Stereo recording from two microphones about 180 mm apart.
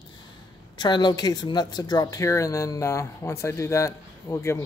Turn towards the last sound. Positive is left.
turn(degrees=15)  # may be behind; listen again after turning